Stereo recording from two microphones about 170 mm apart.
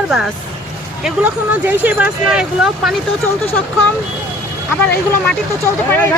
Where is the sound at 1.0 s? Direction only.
10° right (ahead or behind).